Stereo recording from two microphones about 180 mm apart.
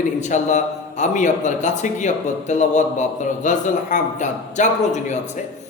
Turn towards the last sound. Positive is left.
turn(degrees=40)  # may be behind; listen again after turning